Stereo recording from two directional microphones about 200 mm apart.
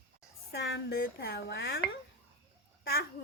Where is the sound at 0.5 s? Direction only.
55° left (ahead or behind).